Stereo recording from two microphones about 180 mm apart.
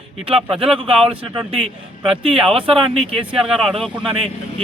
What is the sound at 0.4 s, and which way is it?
Speech, 30° right (ahead or behind).